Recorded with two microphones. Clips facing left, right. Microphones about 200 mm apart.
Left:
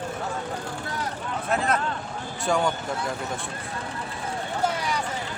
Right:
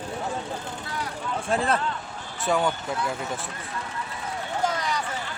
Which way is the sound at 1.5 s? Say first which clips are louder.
Even; 30° right (ahead or behind).